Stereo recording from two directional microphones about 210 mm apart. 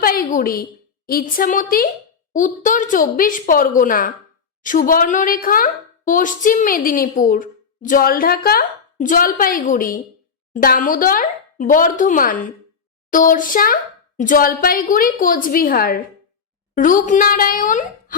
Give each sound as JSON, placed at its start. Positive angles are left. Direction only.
{"t": 0.0, "sound": "a woman's voice", "side_deg": 45}